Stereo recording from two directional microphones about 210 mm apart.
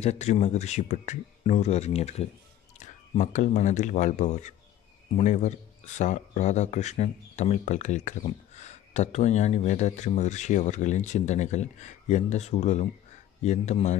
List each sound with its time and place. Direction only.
0.0 s speech: 30° left (ahead or behind)